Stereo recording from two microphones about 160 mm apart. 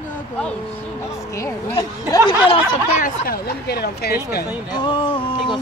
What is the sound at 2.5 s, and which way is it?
Speech, 50° left (ahead or behind).